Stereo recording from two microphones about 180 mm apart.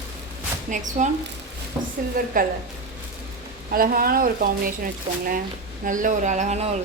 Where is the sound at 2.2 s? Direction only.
55° right (ahead or behind).